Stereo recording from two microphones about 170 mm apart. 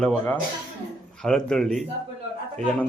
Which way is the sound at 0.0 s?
5° left (ahead or behind).